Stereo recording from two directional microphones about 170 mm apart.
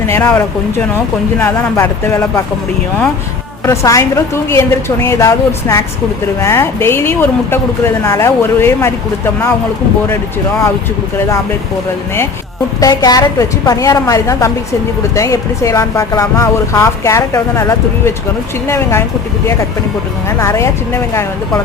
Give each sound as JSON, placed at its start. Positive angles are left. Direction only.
{"t": 0.1, "sound": "a woman's voice", "side_deg": 10}
{"t": 3.7, "sound": "a woman's voice", "side_deg": 20}
{"t": 12.8, "sound": "a woman's voice", "side_deg": 20}
{"t": 20.4, "sound": "a woman's voice", "side_deg": 15}